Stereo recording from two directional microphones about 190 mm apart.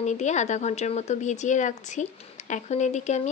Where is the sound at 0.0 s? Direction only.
40° left (ahead or behind).